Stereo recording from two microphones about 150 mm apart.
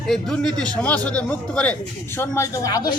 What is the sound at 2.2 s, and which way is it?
Speech, 20° left (ahead or behind).